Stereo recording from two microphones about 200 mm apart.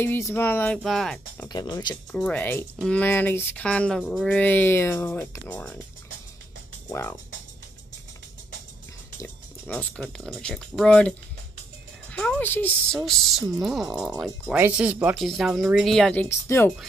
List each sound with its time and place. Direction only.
0.0 s speech: 10° left (ahead or behind)
1.5 s speech: 20° left (ahead or behind)
2.1 s speech: 5° left (ahead or behind)
6.9 s speech: 10° left (ahead or behind)
9.2 s speech: 10° left (ahead or behind)